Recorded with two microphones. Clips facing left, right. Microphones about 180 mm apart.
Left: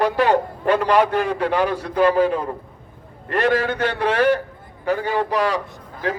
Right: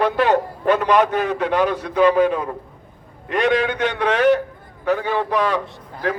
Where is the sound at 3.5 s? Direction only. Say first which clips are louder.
Right 1 dB; 5° left (ahead or behind).